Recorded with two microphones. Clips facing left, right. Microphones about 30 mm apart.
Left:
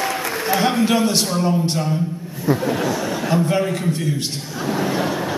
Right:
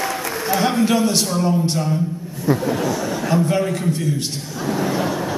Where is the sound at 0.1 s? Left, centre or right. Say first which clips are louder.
Left 1 dB; centre.